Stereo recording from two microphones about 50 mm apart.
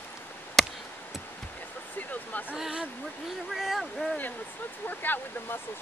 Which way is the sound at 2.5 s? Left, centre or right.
Centre.